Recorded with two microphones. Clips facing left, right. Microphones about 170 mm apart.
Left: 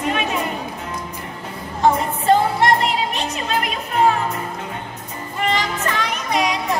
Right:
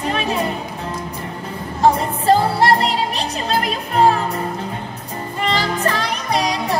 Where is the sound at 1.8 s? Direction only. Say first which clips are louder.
Right 1 dB; 35° right (ahead or behind).